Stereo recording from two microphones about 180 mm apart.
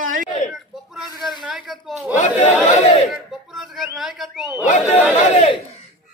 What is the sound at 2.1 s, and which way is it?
Speech, 40° left (ahead or behind).